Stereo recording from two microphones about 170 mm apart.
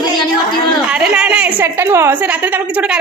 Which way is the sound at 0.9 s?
5° right (ahead or behind).